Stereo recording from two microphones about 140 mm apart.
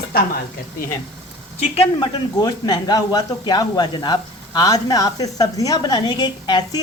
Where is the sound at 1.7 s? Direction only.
40° left (ahead or behind).